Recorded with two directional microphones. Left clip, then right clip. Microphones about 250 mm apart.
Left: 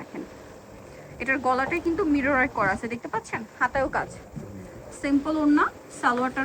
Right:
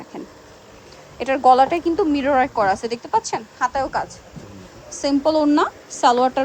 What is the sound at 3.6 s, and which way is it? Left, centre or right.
Speech, centre.